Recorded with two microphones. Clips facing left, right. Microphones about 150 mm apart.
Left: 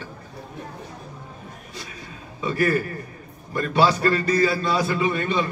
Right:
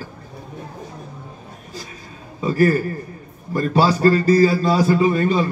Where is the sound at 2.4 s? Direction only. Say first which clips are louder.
Right 5 dB; 35° right (ahead or behind).